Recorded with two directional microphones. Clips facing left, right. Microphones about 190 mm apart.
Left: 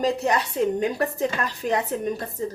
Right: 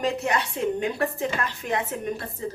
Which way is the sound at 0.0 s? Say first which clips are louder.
Left 3 dB; 35° left (ahead or behind).